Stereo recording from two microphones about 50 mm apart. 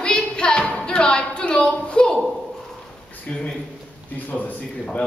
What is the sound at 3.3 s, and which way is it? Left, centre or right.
A woman's voice, left.